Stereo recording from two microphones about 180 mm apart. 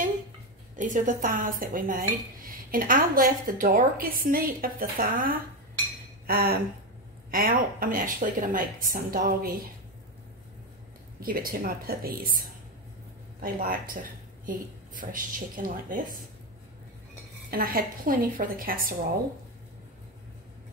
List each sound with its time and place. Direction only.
0.7 s speech: 45° right (ahead or behind)
6.2 s a sound: 55° right (ahead or behind)
7.2 s speech: 55° right (ahead or behind)
11.1 s speech: 55° right (ahead or behind)
17.5 s speech: 55° right (ahead or behind)